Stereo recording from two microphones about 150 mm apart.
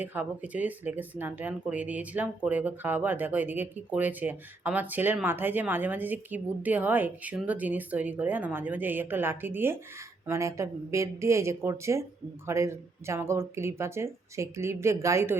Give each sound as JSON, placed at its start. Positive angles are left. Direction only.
{"t": 0.0, "sound": "speech", "side_deg": -10}